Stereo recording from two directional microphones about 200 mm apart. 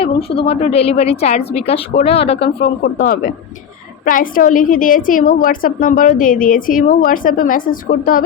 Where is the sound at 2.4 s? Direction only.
50° left (ahead or behind).